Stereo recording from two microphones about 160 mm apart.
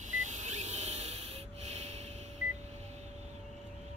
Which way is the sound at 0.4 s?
45° right (ahead or behind).